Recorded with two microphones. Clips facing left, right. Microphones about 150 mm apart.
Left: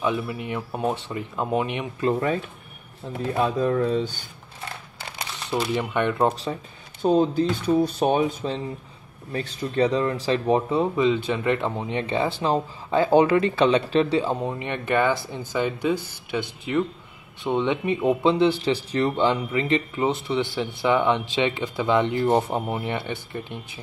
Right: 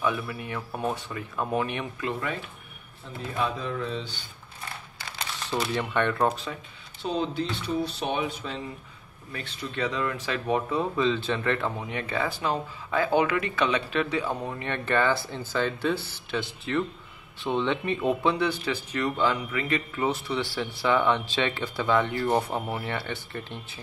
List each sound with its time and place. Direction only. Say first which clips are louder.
0.0 s speech: left 3 dB; 20° left (ahead or behind)
2.0 s speech: left 11 dB; 35° left (ahead or behind)
3.3 s speech: left 7 dB; 40° left (ahead or behind)
5.5 s speech: left 3 dB; 10° left (ahead or behind)
6.1 s speech: left 3 dB; 30° left (ahead or behind)
7.0 s speech: left 9 dB; 45° left (ahead or behind); by 23.8 s 15° left (ahead or behind)